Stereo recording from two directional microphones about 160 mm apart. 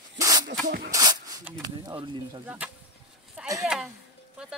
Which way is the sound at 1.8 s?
30° right (ahead or behind).